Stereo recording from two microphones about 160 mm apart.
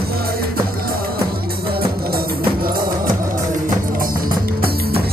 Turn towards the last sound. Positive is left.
turn(degrees=-65)  # may be behind; listen again after turning